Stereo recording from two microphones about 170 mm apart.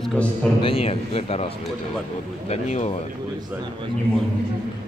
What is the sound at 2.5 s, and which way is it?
Speech, 35° left (ahead or behind).